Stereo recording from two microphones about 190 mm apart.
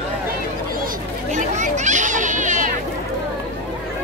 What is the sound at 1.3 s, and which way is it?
Children playing, 40° right (ahead or behind).